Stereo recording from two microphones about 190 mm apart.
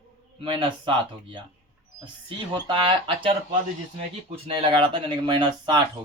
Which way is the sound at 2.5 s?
25° right (ahead or behind).